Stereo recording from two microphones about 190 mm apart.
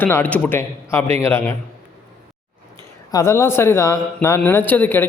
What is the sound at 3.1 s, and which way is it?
A man's voice, 15° left (ahead or behind).